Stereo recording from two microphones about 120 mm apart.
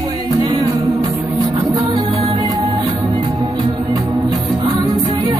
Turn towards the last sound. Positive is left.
turn(degrees=-35)  # may be behind; listen again after turning